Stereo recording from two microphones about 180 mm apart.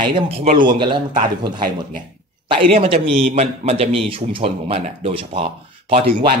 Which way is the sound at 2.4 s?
30° right (ahead or behind).